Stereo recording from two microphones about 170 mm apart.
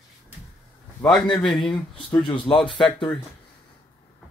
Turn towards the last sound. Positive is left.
turn(degrees=30)  # may be behind; listen again after turning